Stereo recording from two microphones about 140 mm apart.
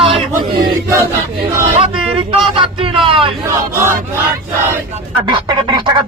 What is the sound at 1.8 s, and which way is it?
Speech, 40° right (ahead or behind).